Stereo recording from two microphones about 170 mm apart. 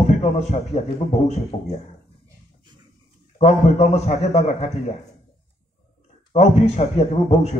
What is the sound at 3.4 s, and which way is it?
Speech, 40° left (ahead or behind).